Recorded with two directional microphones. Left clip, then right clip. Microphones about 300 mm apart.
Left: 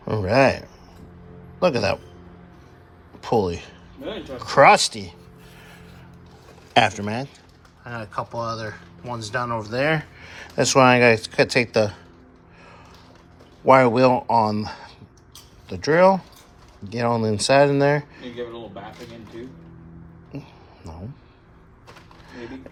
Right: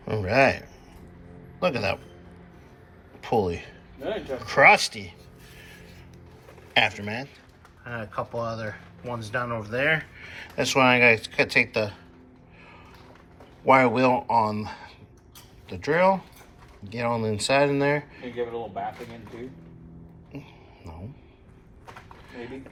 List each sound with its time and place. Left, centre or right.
0.0 s a man's voice: centre
3.2 s a man's voice: centre
6.7 s speech: centre
7.9 s speech: centre; by 11.9 s left
13.7 s speech: centre
20.3 s a sound: centre